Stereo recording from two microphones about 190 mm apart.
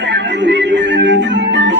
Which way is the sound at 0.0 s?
65° right (ahead or behind).